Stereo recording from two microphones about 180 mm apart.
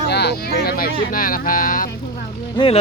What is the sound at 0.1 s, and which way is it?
Speech, 65° left (ahead or behind).